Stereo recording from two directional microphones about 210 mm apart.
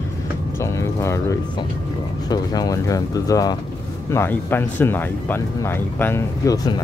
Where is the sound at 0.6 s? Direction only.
15° left (ahead or behind).